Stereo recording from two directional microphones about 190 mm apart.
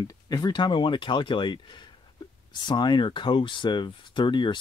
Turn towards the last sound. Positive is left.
turn(degrees=25)  # may be behind; listen again after turning